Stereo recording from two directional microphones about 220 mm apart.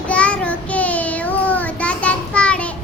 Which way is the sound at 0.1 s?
5° left (ahead or behind).